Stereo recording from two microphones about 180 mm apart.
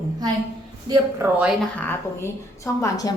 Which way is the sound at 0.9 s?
20° right (ahead or behind).